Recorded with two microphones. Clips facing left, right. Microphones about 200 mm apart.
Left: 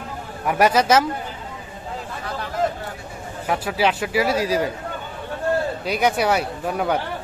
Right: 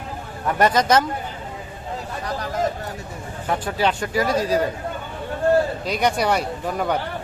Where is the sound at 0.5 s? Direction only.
10° left (ahead or behind).